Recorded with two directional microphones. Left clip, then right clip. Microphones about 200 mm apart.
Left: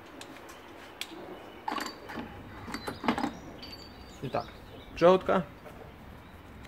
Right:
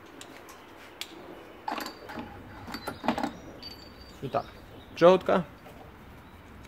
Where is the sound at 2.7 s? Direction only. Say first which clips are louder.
Right 1 dB; 15° right (ahead or behind).